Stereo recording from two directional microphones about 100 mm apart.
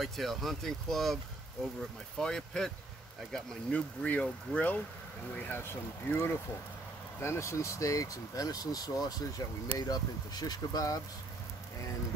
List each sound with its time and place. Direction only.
0.0 s speech: centre (ahead or behind)
2.1 s speech: 5° left (ahead or behind); by 11.0 s 40° left (ahead or behind)